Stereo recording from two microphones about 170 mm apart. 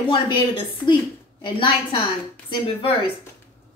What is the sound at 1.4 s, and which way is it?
A woman's voice, 30° left (ahead or behind).